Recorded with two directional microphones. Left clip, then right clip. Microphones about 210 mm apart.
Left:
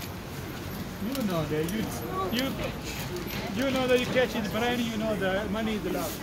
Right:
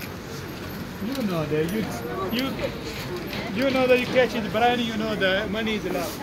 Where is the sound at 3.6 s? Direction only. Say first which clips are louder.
Right 5 dB; 45° right (ahead or behind).